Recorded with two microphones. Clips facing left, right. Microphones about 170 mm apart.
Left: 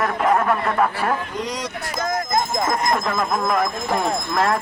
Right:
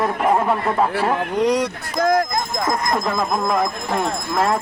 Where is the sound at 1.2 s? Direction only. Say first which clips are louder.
Right 9 dB; 65° right (ahead or behind).